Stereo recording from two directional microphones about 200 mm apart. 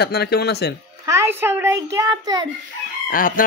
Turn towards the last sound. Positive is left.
turn(degrees=45)  # may be behind; listen again after turning